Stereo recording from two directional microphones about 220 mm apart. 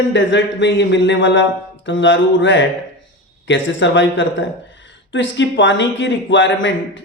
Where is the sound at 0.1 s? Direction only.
55° left (ahead or behind).